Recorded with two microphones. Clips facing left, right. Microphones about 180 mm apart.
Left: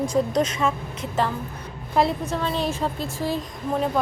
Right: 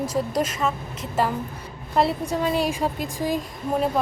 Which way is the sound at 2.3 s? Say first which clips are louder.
Right 2 dB; 10° right (ahead or behind).